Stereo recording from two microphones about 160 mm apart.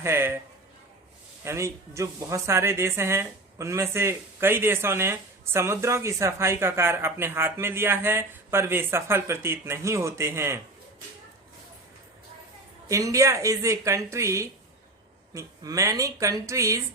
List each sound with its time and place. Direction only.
0.0 s speech: 15° right (ahead or behind)
1.5 s speech: 20° right (ahead or behind)
12.9 s speech: 20° right (ahead or behind)